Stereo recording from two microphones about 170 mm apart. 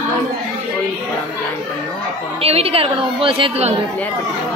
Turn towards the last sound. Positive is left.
turn(degrees=-35)  # may be behind; listen again after turning